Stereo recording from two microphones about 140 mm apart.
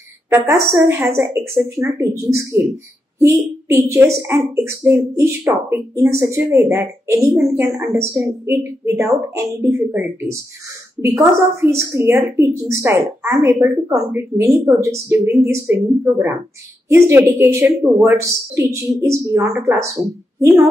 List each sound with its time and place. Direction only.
0.3 s a woman's voice: 15° right (ahead or behind)
3.2 s a woman's voice: 20° right (ahead or behind)